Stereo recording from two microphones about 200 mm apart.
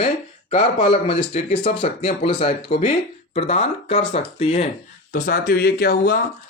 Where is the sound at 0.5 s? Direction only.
25° left (ahead or behind).